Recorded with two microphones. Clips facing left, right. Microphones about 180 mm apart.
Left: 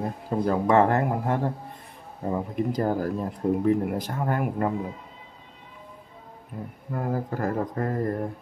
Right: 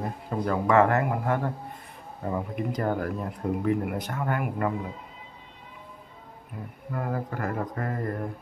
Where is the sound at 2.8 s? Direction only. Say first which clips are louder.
Left 2 dB; 35° left (ahead or behind).